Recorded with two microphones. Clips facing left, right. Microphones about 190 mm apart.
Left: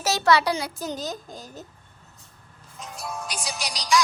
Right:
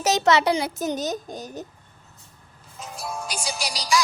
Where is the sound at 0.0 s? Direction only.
20° right (ahead or behind).